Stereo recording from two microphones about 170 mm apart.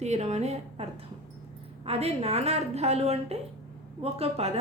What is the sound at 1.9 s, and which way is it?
A woman's voice, 35° right (ahead or behind).